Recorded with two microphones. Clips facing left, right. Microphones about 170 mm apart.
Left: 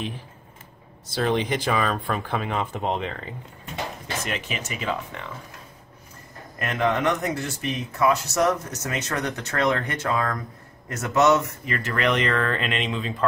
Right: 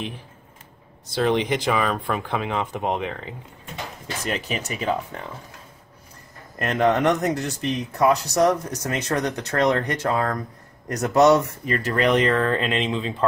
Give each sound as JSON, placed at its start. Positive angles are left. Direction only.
{"t": 1.1, "sound": "speech", "side_deg": -20}
{"t": 4.3, "sound": "speech", "side_deg": -35}
{"t": 6.6, "sound": "speech", "side_deg": -40}